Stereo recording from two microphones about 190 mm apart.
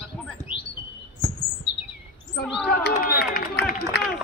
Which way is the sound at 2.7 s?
50° left (ahead or behind).